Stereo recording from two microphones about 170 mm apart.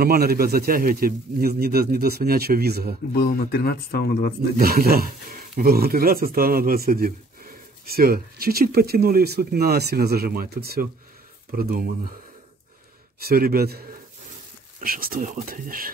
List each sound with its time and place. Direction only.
0.0 s speech: 65° right (ahead or behind)
3.1 s speech: 60° left (ahead or behind)
4.6 s speech: 65° right (ahead or behind)
13.2 s speech: 60° right (ahead or behind)